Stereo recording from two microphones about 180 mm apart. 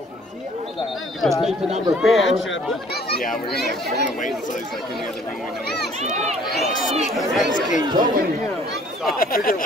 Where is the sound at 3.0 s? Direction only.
60° left (ahead or behind).